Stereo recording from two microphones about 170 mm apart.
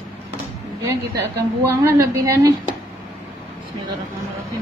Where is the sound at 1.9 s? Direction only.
20° right (ahead or behind).